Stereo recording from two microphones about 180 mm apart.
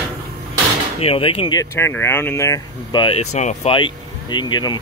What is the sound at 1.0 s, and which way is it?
Speech, 30° left (ahead or behind).